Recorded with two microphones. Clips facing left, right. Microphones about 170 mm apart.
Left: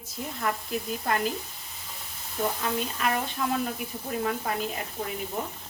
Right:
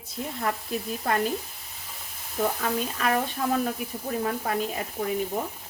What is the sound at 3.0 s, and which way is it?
Speech, 40° right (ahead or behind).